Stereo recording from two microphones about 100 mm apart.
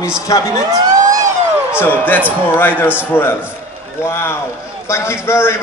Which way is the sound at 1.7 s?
20° left (ahead or behind).